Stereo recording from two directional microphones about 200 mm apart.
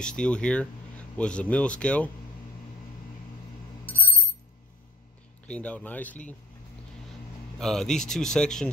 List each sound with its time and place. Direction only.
0.0 s speech: 5° left (ahead or behind)
3.8 s a sound: 10° left (ahead or behind)
5.5 s speech: 5° left (ahead or behind)
7.5 s speech: centre (ahead or behind)